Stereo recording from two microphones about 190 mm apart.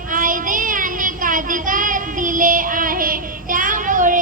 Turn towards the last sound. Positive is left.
turn(degrees=-45)  # may be behind; listen again after turning